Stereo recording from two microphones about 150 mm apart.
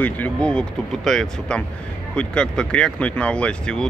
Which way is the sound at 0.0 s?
10° left (ahead or behind).